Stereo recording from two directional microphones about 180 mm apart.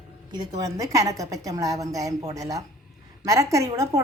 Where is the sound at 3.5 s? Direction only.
15° right (ahead or behind).